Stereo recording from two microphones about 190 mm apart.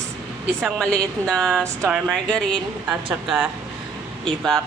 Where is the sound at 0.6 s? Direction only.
Centre (ahead or behind).